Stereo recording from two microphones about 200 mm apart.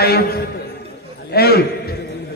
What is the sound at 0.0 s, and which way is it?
Speech, 50° left (ahead or behind).